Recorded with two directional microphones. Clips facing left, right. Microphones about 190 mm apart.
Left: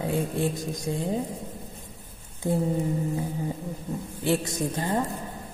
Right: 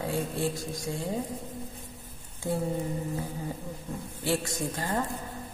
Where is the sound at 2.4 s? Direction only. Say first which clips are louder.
Left 4 dB; 20° left (ahead or behind).